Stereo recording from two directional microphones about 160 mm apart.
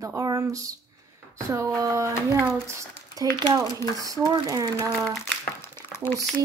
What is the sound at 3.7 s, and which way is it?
Speech, 25° left (ahead or behind).